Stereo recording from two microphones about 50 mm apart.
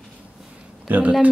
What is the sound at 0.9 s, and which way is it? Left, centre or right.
Speech, right.